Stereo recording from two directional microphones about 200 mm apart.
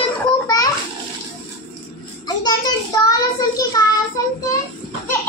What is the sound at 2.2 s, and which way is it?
Child singing, 20° left (ahead or behind).